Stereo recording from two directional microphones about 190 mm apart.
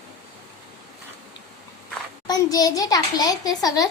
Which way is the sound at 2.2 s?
20° left (ahead or behind).